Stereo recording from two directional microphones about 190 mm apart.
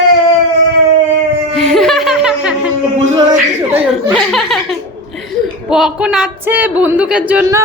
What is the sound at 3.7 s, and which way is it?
A woman's voice, centre (ahead or behind).